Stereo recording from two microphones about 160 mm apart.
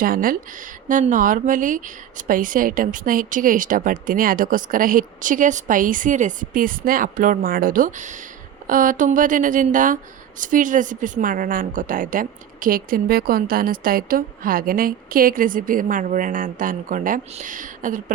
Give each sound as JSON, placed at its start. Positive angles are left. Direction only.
{"t": 0.0, "sound": "speech", "side_deg": -60}